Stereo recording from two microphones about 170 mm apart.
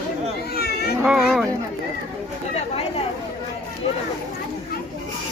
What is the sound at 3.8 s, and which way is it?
Speech, 35° left (ahead or behind).